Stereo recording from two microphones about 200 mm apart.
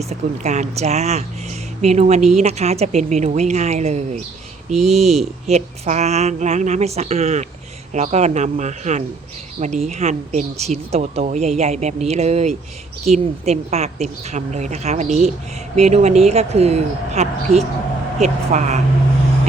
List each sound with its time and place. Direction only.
0.1 s speech: 35° right (ahead or behind)